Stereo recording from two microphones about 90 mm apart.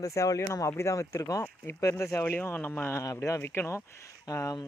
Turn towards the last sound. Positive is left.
turn(degrees=35)  # may be behind; listen again after turning